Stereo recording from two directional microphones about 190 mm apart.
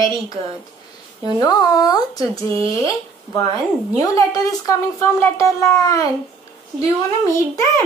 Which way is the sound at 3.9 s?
15° left (ahead or behind).